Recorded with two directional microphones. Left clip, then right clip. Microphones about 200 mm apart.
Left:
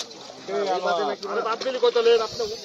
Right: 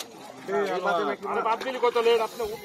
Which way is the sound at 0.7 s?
55° right (ahead or behind).